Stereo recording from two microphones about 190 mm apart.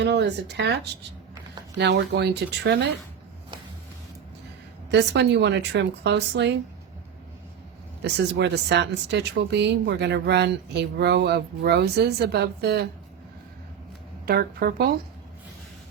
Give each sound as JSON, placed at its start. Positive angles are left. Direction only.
{"t": 0.0, "sound": "speech", "side_deg": -65}
{"t": 1.8, "sound": "speech", "side_deg": -65}
{"t": 4.9, "sound": "speech", "side_deg": -65}
{"t": 8.0, "sound": "speech", "side_deg": -65}
{"t": 14.3, "sound": "a woman's voice", "side_deg": -55}